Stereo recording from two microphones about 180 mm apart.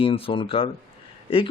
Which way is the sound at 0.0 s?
30° left (ahead or behind).